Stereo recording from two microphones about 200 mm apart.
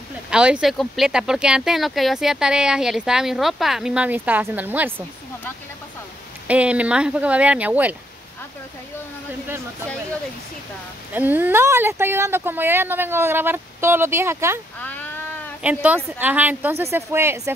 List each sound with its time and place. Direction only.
0.3 s speech: 5° right (ahead or behind)
6.4 s speech: 5° right (ahead or behind)
11.1 s speech: 10° right (ahead or behind)
14.8 s a sound: 10° left (ahead or behind)
15.6 s speech: 10° right (ahead or behind)